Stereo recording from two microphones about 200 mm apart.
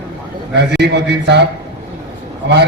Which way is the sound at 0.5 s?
60° right (ahead or behind).